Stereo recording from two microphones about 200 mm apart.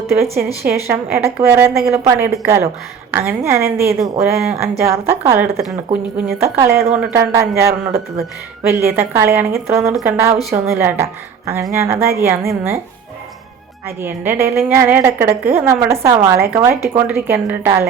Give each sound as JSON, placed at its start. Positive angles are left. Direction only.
{"t": 0.3, "sound": "a woman's voice", "side_deg": -50}
{"t": 0.9, "sound": "a woman's voice", "side_deg": -10}
{"t": 13.8, "sound": "a woman's voice", "side_deg": -10}